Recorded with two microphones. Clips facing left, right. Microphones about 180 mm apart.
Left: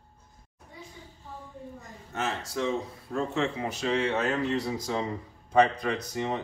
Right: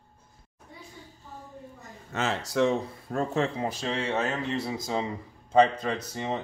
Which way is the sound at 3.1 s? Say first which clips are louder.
Right 1 dB; 40° right (ahead or behind).